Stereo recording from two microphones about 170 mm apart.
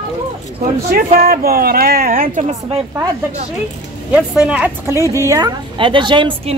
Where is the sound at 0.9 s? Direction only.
60° right (ahead or behind).